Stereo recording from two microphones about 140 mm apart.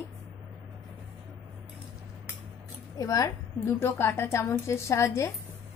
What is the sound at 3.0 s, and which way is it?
A woman's voice, 25° left (ahead or behind).